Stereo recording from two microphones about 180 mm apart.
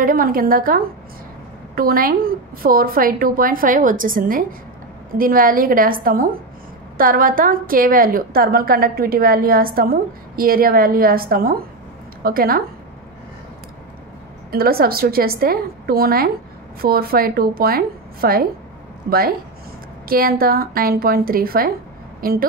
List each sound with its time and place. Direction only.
0.0 s a woman's voice: 50° right (ahead or behind)
14.5 s a woman's voice: 55° right (ahead or behind)